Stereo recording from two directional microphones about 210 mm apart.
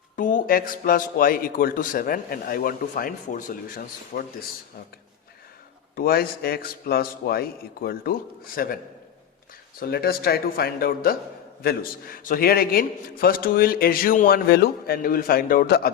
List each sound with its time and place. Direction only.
0.2 s a man's voice: 40° left (ahead or behind)
6.0 s a man's voice: 45° left (ahead or behind)
9.8 s a man's voice: 45° left (ahead or behind)